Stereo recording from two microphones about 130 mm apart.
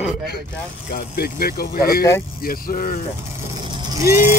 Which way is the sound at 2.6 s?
90° left.